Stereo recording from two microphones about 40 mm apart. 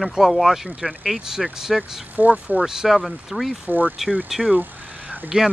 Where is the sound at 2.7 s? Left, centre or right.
Centre.